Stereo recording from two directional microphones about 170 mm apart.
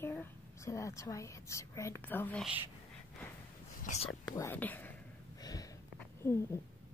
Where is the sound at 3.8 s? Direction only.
45° left (ahead or behind).